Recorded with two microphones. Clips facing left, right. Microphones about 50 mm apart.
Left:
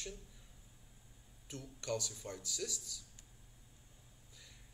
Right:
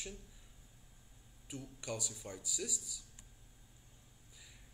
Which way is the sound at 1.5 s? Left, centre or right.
Centre.